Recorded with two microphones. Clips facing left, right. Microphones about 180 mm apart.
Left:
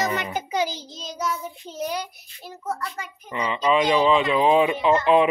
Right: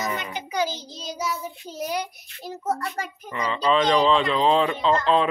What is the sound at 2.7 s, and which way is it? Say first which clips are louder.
Speech: right 3 dB; 40° right (ahead or behind).